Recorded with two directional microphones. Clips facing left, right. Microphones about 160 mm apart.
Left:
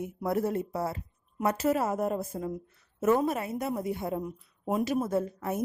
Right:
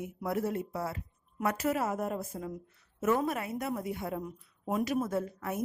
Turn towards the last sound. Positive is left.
turn(degrees=30)  # may be behind; listen again after turning